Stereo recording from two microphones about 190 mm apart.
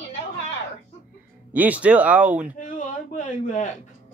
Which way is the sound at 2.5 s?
45° left (ahead or behind).